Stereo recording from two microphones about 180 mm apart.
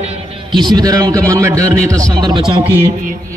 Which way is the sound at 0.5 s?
25° right (ahead or behind).